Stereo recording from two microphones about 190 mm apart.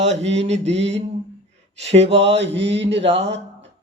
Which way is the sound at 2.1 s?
70° right (ahead or behind).